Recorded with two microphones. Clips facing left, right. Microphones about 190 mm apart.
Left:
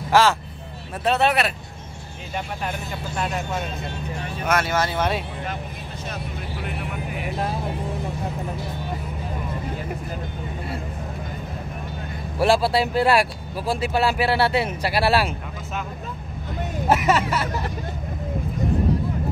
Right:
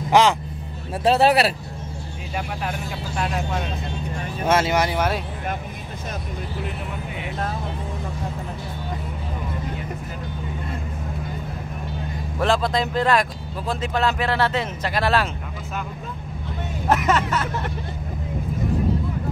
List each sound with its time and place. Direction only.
0.1 s speech: 15° right (ahead or behind)
1.0 s speech: 35° right (ahead or behind)
3.2 s speech: centre (ahead or behind)
4.5 s speech: 25° right (ahead or behind)
12.4 s speech: 10° left (ahead or behind)
16.9 s speech: 10° left (ahead or behind)